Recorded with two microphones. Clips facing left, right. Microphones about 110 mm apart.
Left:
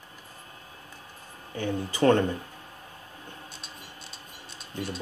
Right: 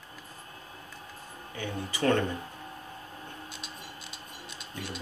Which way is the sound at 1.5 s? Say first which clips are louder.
Left 6 dB; 35° left (ahead or behind).